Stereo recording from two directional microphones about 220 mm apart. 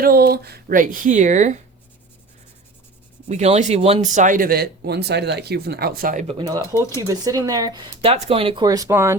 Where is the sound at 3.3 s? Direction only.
30° right (ahead or behind).